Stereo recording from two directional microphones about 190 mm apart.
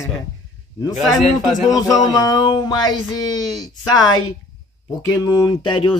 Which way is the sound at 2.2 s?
20° left (ahead or behind).